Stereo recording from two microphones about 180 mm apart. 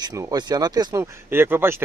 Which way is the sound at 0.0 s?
20° right (ahead or behind).